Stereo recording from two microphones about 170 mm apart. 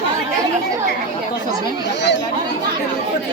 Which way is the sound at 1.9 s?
90° left.